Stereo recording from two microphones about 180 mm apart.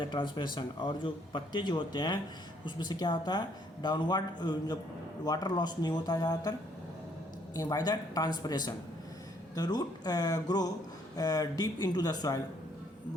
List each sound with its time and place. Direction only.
0.0 s a man's voice: 25° left (ahead or behind)
7.5 s a man's voice: 20° left (ahead or behind)